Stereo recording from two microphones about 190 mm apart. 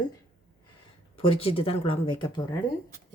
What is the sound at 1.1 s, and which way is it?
Speech, 30° left (ahead or behind).